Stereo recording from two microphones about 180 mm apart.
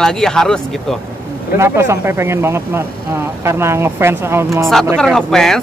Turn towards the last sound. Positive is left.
turn(degrees=0)  # may be behind; listen again after turning